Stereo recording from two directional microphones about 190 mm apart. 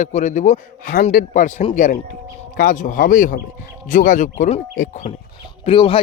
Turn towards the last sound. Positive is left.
turn(degrees=30)  # may be behind; listen again after turning